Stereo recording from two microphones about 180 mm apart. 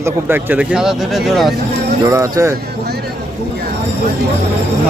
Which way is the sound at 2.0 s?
20° right (ahead or behind).